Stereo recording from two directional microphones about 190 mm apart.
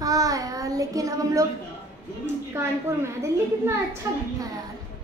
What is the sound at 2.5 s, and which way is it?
A child's voice, 15° right (ahead or behind).